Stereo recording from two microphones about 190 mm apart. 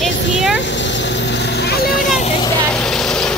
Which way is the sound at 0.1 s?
75° left (ahead or behind).